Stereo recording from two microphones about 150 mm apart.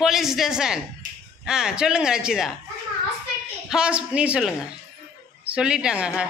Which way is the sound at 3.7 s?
5° right (ahead or behind).